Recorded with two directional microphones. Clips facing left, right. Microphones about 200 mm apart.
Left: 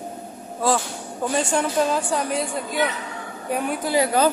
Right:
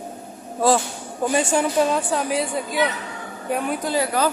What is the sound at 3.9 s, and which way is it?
Speech, 20° left (ahead or behind).